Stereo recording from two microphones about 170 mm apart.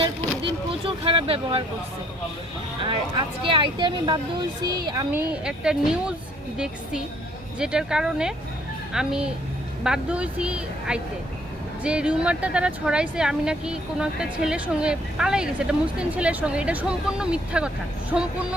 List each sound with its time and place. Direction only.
0.4 s speech: 30° right (ahead or behind)
2.8 s speech: 30° right (ahead or behind)
5.3 s speech: 5° right (ahead or behind)
7.6 s speech: 5° right (ahead or behind)